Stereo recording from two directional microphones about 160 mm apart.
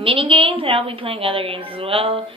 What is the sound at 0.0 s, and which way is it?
A woman's voice, 35° right (ahead or behind).